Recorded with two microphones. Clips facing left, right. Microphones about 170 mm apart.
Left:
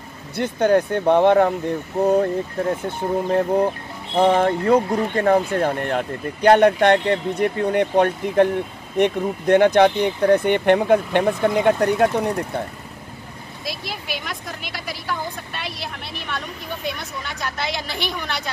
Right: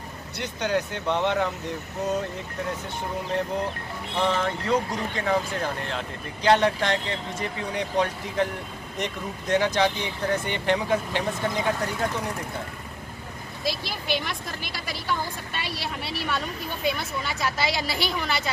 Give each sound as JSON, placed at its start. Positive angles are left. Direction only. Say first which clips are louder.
{"t": 0.4, "sound": "speech", "louder": "left 9 dB", "side_deg": 50}
{"t": 13.7, "sound": "a woman's voice", "louder": "right 2 dB", "side_deg": 0}
{"t": 16.8, "sound": "a woman's voice", "louder": "right 4 dB", "side_deg": 0}